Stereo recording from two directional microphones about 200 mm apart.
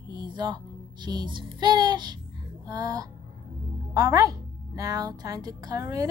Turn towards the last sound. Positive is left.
turn(degrees=-15)  # may be behind; listen again after turning